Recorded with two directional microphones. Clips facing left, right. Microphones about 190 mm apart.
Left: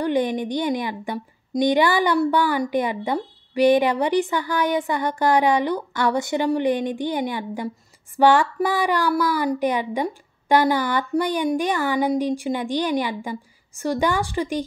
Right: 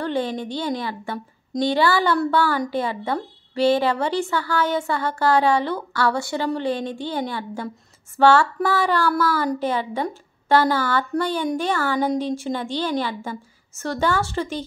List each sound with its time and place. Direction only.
0.0 s a woman's voice: 15° left (ahead or behind)